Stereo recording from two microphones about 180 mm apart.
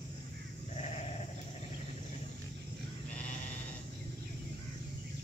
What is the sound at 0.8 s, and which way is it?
Sheep, 40° left (ahead or behind).